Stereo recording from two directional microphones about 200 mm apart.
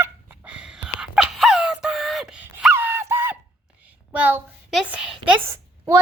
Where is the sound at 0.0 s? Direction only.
10° right (ahead or behind).